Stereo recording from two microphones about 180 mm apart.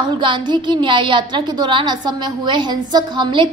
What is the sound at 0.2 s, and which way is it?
A woman's voice, 25° right (ahead or behind).